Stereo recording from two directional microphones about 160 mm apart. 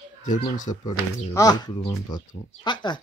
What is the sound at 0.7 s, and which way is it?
Speech, 35° left (ahead or behind).